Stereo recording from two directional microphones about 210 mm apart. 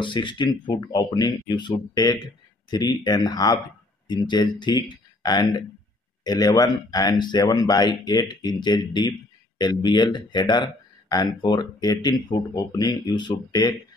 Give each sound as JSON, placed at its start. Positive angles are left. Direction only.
{"t": 0.0, "sound": "speech", "side_deg": 25}